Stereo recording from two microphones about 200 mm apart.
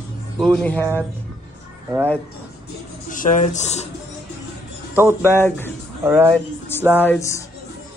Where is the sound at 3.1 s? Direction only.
40° left (ahead or behind).